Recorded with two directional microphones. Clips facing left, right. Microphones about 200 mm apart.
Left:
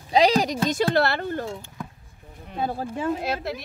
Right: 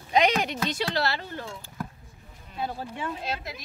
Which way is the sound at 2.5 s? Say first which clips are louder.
Left 5 dB; 45° left (ahead or behind).